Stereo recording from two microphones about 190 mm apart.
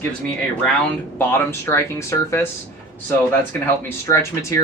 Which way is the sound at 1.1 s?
10° left (ahead or behind).